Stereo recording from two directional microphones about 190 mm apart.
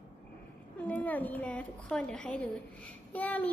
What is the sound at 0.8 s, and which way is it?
Speech, 10° left (ahead or behind).